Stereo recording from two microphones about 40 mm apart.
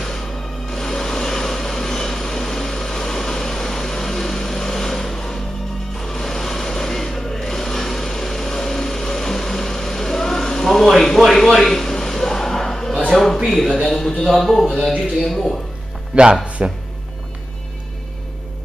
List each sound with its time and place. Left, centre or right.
0.7 s vehicle: centre
5.9 s sewing machine: centre
11.3 s a sound: centre
13.5 s speech: centre
16.1 s speech: right